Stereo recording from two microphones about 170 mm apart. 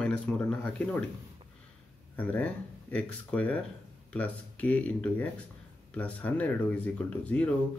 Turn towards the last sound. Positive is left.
turn(degrees=5)  # may be behind; listen again after turning